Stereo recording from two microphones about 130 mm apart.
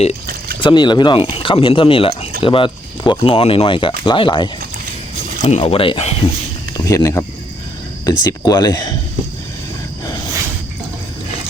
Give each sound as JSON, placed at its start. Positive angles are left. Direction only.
{"t": 0.6, "sound": "speech", "side_deg": 35}
{"t": 5.5, "sound": "speech", "side_deg": 55}
{"t": 6.7, "sound": "speech", "side_deg": 25}